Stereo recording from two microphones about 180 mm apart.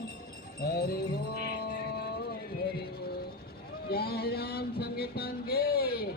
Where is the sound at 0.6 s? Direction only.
65° left (ahead or behind).